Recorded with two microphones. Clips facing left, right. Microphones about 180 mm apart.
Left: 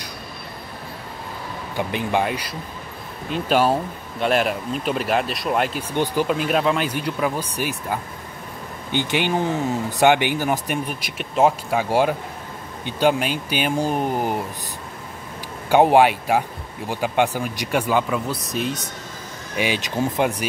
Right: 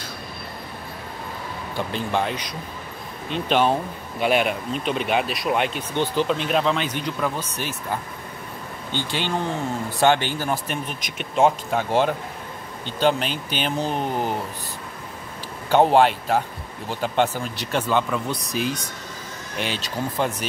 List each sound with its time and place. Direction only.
1.8 s speech: 15° left (ahead or behind)
15.7 s speech: 10° left (ahead or behind)